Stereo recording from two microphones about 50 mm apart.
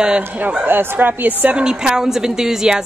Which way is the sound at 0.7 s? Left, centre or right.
Right.